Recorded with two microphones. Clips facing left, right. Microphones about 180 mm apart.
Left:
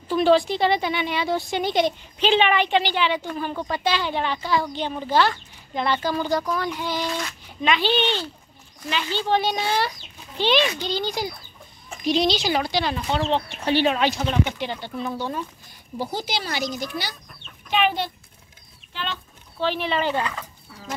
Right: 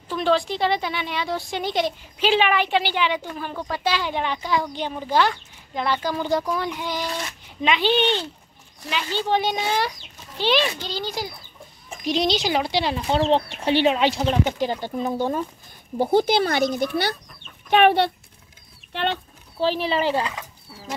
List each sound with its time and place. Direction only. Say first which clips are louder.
0.1 s a woman's voice: left 4 dB; 5° left (ahead or behind); by 3.3 s 10° right (ahead or behind)
3.3 s speech: left 2 dB; centre (ahead or behind)
9.3 s a woman's voice: even; 15° right (ahead or behind)
12.0 s speech: left 1 dB; 15° right (ahead or behind)
14.6 s speech: right 4 dB; 40° right (ahead or behind)
16.0 s speech: right 10 dB; 55° right (ahead or behind)
19.6 s speech: right 2 dB; 35° right (ahead or behind)